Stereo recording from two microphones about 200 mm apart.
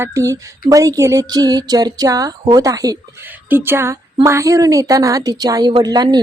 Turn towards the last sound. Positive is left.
turn(degrees=-20)  # may be behind; listen again after turning